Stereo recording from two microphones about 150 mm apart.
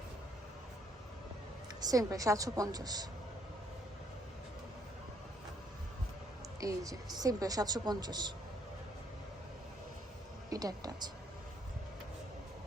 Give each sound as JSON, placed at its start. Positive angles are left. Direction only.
{"t": 1.8, "sound": "a woman's voice", "side_deg": -25}
{"t": 6.6, "sound": "a woman's voice", "side_deg": -20}
{"t": 10.5, "sound": "a woman's voice", "side_deg": -25}